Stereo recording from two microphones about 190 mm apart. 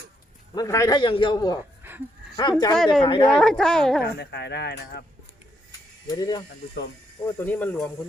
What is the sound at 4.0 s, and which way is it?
Speech, 60° left (ahead or behind).